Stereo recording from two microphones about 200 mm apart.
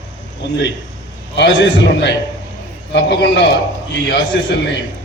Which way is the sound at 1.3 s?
60° left (ahead or behind).